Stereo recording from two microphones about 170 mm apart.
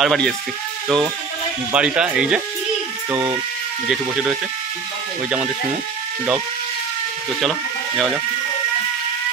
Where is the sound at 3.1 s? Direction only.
15° right (ahead or behind).